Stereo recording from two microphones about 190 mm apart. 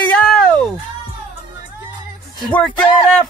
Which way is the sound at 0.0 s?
5° left (ahead or behind).